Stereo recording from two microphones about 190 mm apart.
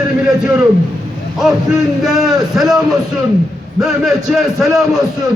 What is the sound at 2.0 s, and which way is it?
A man's voice, centre (ahead or behind).